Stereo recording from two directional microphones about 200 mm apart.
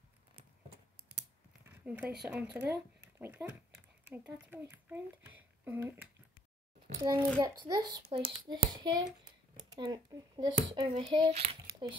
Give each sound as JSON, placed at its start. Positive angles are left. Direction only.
{"t": 1.7, "sound": "a sound", "side_deg": -10}
{"t": 2.2, "sound": "speech", "side_deg": -5}
{"t": 7.3, "sound": "a child's voice", "side_deg": -20}